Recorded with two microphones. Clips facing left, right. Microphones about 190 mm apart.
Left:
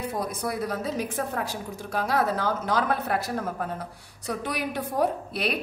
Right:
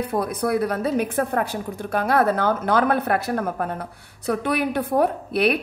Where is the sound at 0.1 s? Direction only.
60° right (ahead or behind).